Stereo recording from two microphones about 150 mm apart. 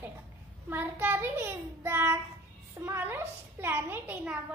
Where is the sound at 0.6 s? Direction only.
15° right (ahead or behind).